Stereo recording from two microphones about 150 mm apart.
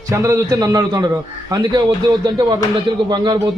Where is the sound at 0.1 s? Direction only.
20° right (ahead or behind).